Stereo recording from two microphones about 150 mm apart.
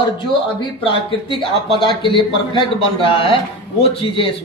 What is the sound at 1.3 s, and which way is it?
A man's voice, 35° left (ahead or behind).